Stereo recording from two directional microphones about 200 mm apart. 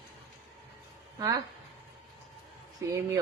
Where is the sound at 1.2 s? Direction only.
20° right (ahead or behind).